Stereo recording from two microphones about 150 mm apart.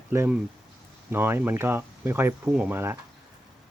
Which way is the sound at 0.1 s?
15° right (ahead or behind).